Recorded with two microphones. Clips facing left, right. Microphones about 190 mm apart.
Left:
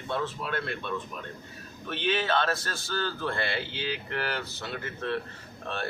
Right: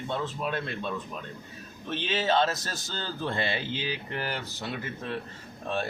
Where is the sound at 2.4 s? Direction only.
60° left (ahead or behind).